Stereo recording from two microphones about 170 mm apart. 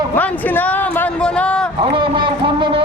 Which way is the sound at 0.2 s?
10° left (ahead or behind).